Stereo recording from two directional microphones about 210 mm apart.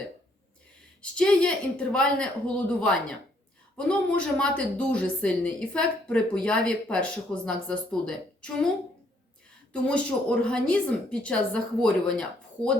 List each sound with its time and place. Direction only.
1.1 s speech: 5° left (ahead or behind)
9.7 s speech: 5° left (ahead or behind)